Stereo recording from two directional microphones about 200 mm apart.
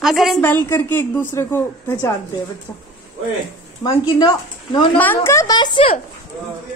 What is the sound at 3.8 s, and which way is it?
Speech, 20° left (ahead or behind).